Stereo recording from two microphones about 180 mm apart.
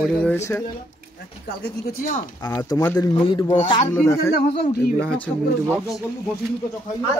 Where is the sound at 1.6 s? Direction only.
60° left (ahead or behind).